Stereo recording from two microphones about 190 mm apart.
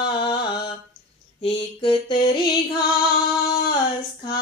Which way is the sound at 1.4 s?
25° left (ahead or behind).